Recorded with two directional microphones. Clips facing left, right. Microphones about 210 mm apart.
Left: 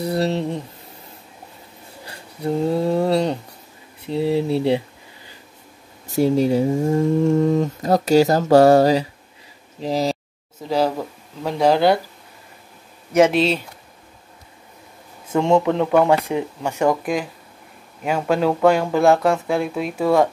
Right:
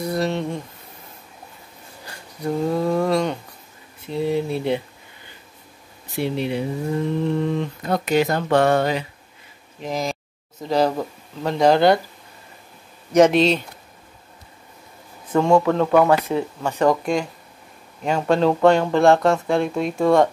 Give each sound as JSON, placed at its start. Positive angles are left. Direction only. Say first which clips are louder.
{"t": 0.0, "sound": "a sound", "louder": "left 2 dB", "side_deg": 35}
{"t": 2.0, "sound": "a sound", "louder": "left 2 dB", "side_deg": 30}
{"t": 4.0, "sound": "speech", "louder": "left 2 dB", "side_deg": 30}
{"t": 6.0, "sound": "speech", "louder": "left 7 dB", "side_deg": 40}
{"t": 10.6, "sound": "speech", "louder": "even", "side_deg": 5}
{"t": 13.1, "sound": "speech", "louder": "right 1 dB", "side_deg": 5}
{"t": 15.3, "sound": "speech", "louder": "even", "side_deg": 20}